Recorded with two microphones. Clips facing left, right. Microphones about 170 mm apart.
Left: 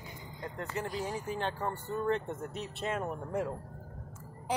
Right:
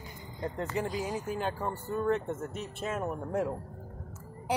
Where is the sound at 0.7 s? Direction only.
15° right (ahead or behind).